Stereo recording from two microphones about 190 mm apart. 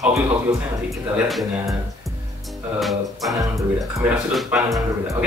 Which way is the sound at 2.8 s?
Centre (ahead or behind).